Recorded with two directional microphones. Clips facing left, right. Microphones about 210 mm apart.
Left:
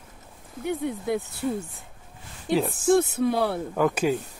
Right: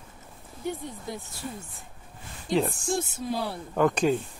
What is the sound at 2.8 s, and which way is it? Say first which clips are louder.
Speech: left 10 dB; 60° left (ahead or behind).